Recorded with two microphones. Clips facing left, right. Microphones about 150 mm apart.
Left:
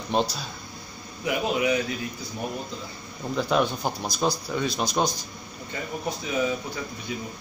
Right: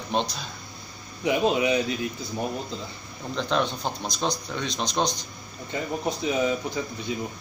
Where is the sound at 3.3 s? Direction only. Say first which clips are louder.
Left 2 dB; 10° left (ahead or behind).